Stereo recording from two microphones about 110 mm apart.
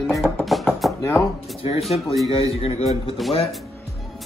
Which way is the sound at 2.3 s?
55° left (ahead or behind).